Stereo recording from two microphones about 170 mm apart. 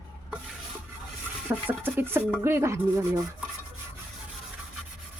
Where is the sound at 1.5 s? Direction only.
10° right (ahead or behind).